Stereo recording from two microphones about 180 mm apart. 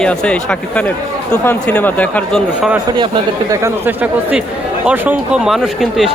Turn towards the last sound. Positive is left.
turn(degrees=0)  # may be behind; listen again after turning